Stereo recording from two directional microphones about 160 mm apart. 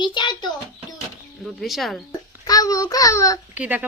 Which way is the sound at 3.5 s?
10° right (ahead or behind).